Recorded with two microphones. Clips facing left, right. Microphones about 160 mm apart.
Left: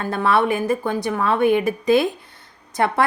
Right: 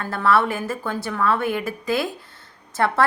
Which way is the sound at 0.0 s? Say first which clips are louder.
Left 1 dB; 20° left (ahead or behind).